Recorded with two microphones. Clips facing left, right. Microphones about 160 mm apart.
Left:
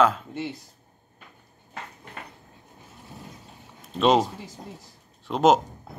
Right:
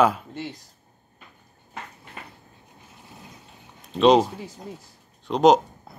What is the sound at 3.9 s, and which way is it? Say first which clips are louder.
A man's voice: right 4 dB; centre (ahead or behind).